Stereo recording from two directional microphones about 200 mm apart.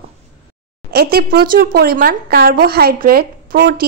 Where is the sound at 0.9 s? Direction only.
50° right (ahead or behind).